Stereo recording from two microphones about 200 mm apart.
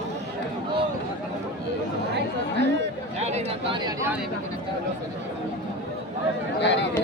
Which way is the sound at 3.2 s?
35° right (ahead or behind).